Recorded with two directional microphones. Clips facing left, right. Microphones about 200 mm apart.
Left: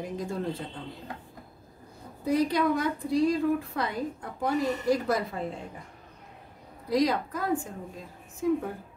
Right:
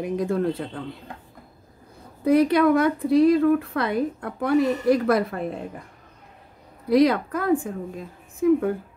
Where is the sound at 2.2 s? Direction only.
65° right (ahead or behind).